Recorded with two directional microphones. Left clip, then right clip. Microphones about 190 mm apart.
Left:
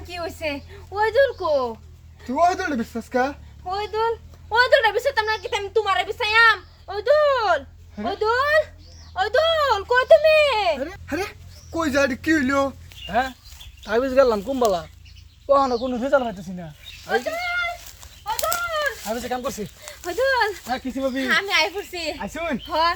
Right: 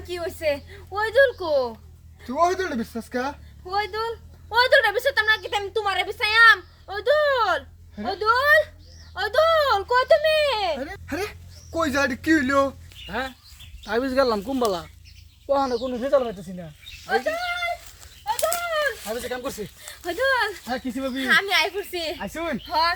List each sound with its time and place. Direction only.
0.1 s speech: 5° right (ahead or behind)
11.0 s speech: 5° left (ahead or behind); by 14.8 s 15° right (ahead or behind)
15.4 s speech: centre (ahead or behind)
18.7 s a sound: 15° right (ahead or behind)
19.0 s speech: 5° right (ahead or behind)
20.1 s speech: 15° right (ahead or behind)